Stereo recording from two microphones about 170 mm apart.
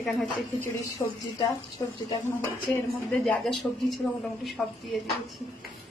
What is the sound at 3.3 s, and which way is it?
A man's voice, 5° left (ahead or behind).